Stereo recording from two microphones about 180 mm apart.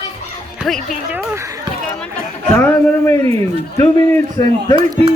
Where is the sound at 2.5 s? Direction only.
5° left (ahead or behind).